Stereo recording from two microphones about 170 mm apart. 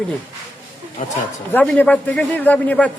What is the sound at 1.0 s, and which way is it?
Speech, 45° left (ahead or behind).